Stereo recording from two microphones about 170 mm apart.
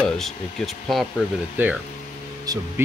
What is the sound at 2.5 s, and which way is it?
Speech, 20° right (ahead or behind).